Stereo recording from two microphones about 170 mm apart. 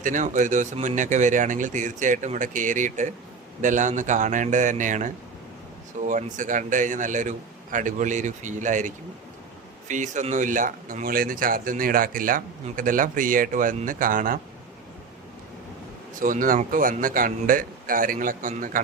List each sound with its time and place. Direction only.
0.0 s speech: 50° right (ahead or behind)
9.9 s speech: 45° right (ahead or behind)
16.2 s speech: 50° right (ahead or behind)